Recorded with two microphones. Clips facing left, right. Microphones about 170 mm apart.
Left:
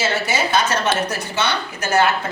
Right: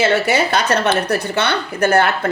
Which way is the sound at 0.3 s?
60° right (ahead or behind).